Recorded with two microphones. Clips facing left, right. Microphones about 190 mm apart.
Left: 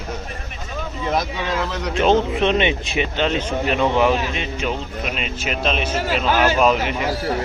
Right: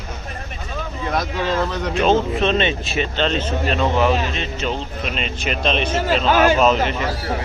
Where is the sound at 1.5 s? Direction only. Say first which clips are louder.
Right 3 dB; centre (ahead or behind).